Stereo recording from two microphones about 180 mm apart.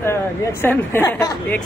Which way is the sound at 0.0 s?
15° left (ahead or behind).